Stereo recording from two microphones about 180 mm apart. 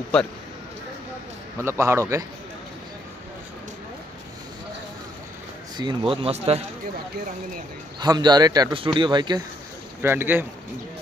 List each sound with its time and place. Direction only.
1.6 s a man's voice: 15° right (ahead or behind)
5.8 s speech: 25° right (ahead or behind)
8.0 s a man's voice: 25° right (ahead or behind)
10.0 s a man's voice: 10° right (ahead or behind)